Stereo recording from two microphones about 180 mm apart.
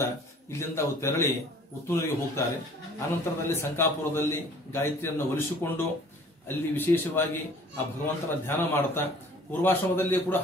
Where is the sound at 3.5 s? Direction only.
15° left (ahead or behind).